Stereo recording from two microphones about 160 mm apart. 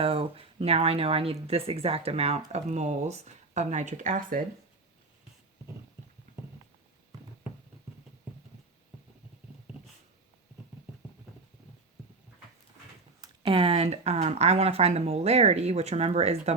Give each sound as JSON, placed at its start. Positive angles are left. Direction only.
{"t": 0.0, "sound": "speech", "side_deg": -35}
{"t": 13.2, "sound": "speech", "side_deg": -30}